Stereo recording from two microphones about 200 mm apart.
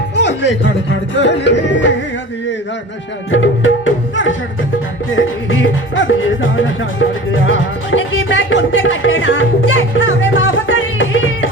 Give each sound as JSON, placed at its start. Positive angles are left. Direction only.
{"t": 0.2, "sound": "music", "side_deg": 60}
{"t": 3.3, "sound": "music", "side_deg": 75}